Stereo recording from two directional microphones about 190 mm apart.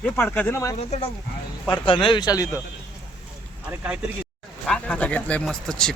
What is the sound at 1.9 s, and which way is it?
Speech, 25° left (ahead or behind).